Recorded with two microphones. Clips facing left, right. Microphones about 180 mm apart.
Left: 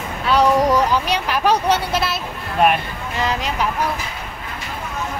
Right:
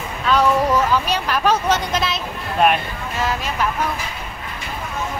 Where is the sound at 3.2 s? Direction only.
20° left (ahead or behind).